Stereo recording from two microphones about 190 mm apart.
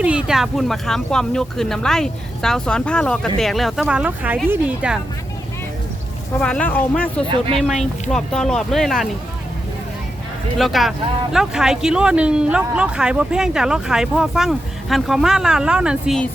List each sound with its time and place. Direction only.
0.0 s speech: 5° right (ahead or behind)
6.4 s speech: 5° left (ahead or behind)
7.3 s speech: 25° right (ahead or behind)
8.1 s speech: 5° left (ahead or behind)
10.6 s speech: centre (ahead or behind)